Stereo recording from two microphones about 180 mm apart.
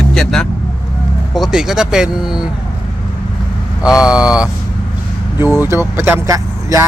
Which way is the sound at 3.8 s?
5° right (ahead or behind).